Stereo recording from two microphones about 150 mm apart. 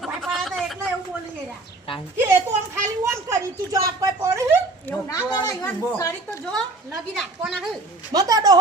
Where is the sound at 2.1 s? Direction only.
15° right (ahead or behind).